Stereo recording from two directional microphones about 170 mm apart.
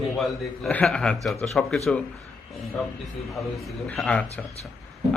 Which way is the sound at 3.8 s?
5° left (ahead or behind).